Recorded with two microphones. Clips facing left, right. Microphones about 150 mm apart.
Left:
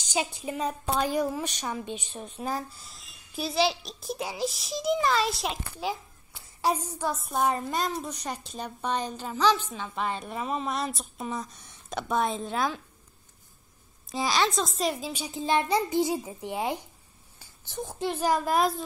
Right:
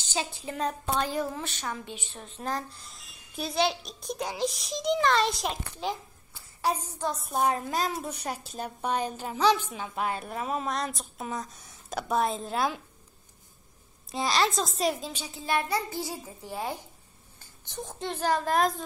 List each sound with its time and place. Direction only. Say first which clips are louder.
0.4 s a woman's voice: left 1 dB; 10° left (ahead or behind)
6.6 s a woman's voice: left 2 dB; 15° left (ahead or behind); by 12.8 s 5° right (ahead or behind)
14.0 s a woman's voice: even; centre (ahead or behind)
15.2 s a child's voice: left 3 dB; 20° left (ahead or behind)
17.4 s speech: left 3 dB; 5° left (ahead or behind)